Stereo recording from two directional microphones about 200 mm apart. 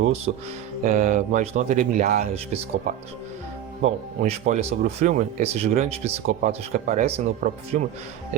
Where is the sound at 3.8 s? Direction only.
35° right (ahead or behind).